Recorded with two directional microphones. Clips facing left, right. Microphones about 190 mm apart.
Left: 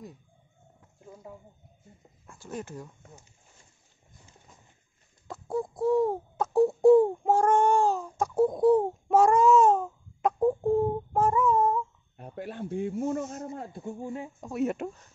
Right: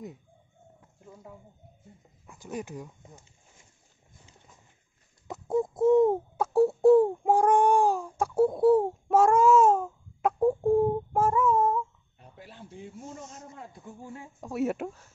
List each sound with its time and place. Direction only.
2.3 s speech: 15° right (ahead or behind)
5.3 s a sound: 20° right (ahead or behind)
6.3 s a sound: 10° right (ahead or behind)
7.2 s speech: 10° right (ahead or behind)
8.2 s baby cry: 5° right (ahead or behind)
12.2 s speech: 55° left (ahead or behind)
13.7 s speech: 30° left (ahead or behind)
14.4 s speech: 5° right (ahead or behind)